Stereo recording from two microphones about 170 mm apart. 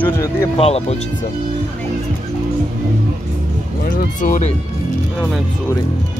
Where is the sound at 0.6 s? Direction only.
35° left (ahead or behind).